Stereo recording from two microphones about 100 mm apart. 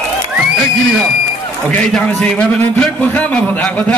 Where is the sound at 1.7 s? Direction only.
10° left (ahead or behind).